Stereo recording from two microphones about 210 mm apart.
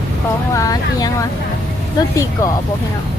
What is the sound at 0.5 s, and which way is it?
Speech, 15° left (ahead or behind).